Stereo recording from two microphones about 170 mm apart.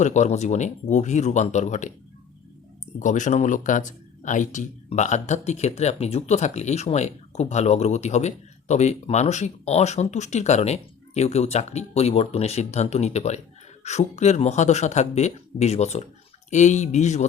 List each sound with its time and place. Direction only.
0.0 s speech: 45° left (ahead or behind)
3.0 s speech: 45° left (ahead or behind)